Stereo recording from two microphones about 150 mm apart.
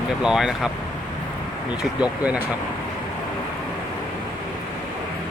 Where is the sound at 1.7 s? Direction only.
5° right (ahead or behind).